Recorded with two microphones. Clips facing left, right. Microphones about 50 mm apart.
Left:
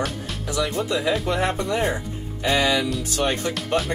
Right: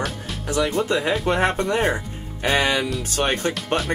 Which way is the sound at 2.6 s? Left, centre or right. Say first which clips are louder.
Even; right.